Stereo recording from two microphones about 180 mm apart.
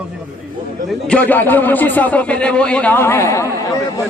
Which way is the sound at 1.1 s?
10° left (ahead or behind).